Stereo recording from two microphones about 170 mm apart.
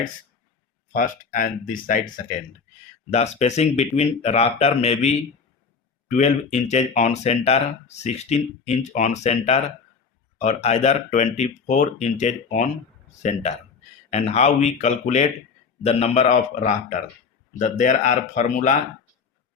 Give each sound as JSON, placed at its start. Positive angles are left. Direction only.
{"t": 0.9, "sound": "speech", "side_deg": 55}
{"t": 3.1, "sound": "speech", "side_deg": 40}